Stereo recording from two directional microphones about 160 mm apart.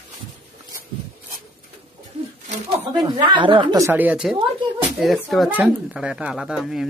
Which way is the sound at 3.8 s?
10° right (ahead or behind).